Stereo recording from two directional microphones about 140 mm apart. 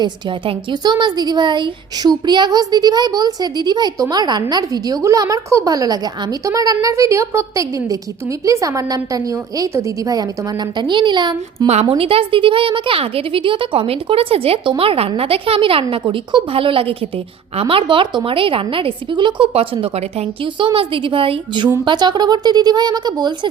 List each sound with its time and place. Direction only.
0.0 s a woman's voice: 35° right (ahead or behind)
11.7 s a woman's voice: 45° right (ahead or behind); by 23.5 s 30° right (ahead or behind)